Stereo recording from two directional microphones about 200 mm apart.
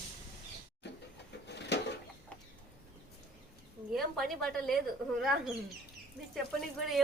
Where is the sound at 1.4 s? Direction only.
60° left (ahead or behind).